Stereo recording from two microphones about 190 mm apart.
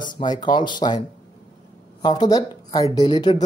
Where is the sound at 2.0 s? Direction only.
20° left (ahead or behind).